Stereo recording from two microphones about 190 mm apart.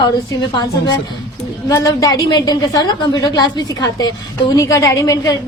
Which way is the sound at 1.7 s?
20° left (ahead or behind).